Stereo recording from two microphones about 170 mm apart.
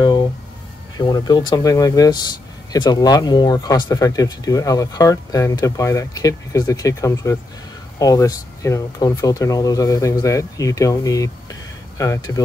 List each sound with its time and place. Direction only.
0.9 s speech: 25° left (ahead or behind)